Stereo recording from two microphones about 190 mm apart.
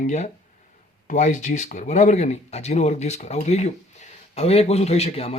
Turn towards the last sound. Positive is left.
turn(degrees=30)  # may be behind; listen again after turning